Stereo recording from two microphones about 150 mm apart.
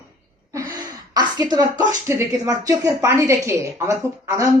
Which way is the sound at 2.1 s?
20° right (ahead or behind).